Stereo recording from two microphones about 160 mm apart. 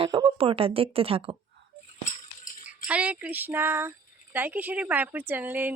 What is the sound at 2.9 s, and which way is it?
Speech, 10° right (ahead or behind).